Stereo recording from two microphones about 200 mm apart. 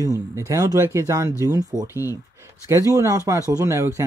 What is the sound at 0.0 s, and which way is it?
Speech, 15° right (ahead or behind).